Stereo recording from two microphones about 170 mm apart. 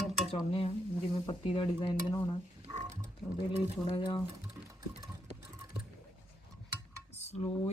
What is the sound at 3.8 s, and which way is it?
Dishes, 30° left (ahead or behind).